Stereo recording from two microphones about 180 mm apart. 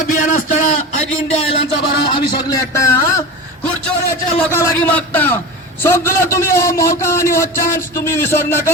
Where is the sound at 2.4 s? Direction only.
20° left (ahead or behind).